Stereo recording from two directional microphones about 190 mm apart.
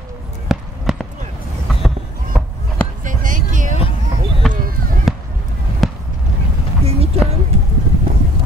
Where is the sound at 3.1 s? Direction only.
45° right (ahead or behind).